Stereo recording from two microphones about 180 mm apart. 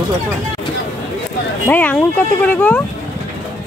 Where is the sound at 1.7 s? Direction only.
10° left (ahead or behind).